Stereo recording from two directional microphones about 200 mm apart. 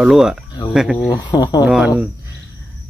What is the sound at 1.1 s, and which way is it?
Speech, 20° left (ahead or behind).